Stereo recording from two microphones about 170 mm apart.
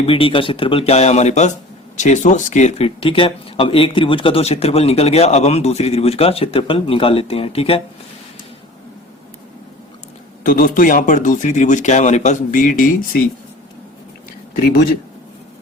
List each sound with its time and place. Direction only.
0.0 s speech: 35° left (ahead or behind)
10.4 s speech: 55° left (ahead or behind)